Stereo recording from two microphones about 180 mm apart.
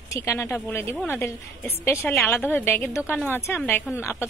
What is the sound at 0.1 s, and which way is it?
A woman's voice, 15° left (ahead or behind).